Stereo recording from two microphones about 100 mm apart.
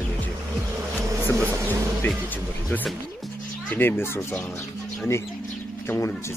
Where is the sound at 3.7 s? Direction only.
20° left (ahead or behind).